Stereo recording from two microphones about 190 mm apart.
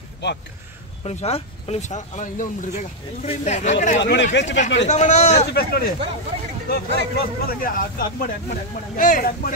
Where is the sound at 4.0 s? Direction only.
70° left (ahead or behind).